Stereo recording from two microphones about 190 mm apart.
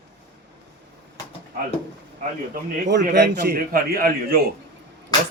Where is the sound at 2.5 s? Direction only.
65° right (ahead or behind).